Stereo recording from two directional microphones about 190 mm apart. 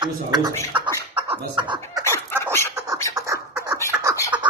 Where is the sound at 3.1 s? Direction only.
15° right (ahead or behind).